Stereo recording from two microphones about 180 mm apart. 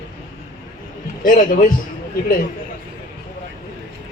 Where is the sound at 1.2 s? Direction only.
50° left (ahead or behind).